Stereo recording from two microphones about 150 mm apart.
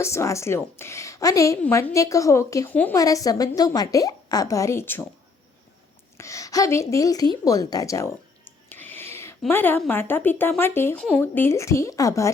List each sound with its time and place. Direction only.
0.0 s a woman's voice: 20° left (ahead or behind)
6.1 s a sound: 20° left (ahead or behind)
9.5 s a woman's voice: 15° left (ahead or behind)